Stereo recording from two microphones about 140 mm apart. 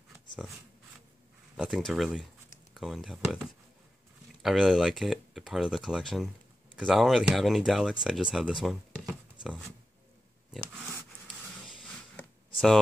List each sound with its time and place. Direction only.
1.6 s speech: centre (ahead or behind)
4.4 s speech: centre (ahead or behind)